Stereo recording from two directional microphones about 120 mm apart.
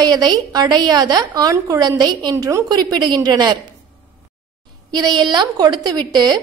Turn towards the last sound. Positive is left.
turn(degrees=-35)  # may be behind; listen again after turning